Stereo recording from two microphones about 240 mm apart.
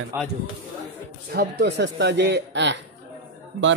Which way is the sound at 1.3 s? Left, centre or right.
Right.